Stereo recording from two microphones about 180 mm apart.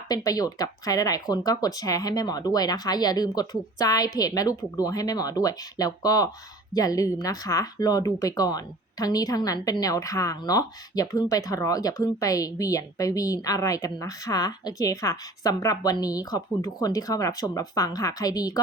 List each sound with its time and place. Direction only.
0.3 s speech: 20° left (ahead or behind)